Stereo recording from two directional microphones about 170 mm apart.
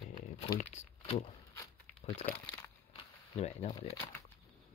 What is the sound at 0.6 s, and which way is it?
Speech, 40° left (ahead or behind).